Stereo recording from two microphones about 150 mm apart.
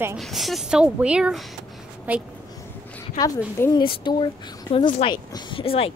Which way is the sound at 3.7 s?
30° left (ahead or behind).